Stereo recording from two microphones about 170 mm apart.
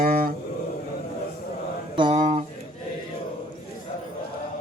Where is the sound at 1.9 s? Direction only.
30° right (ahead or behind).